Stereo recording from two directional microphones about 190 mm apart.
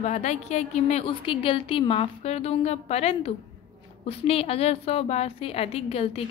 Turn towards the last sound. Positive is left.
turn(degrees=30)  # may be behind; listen again after turning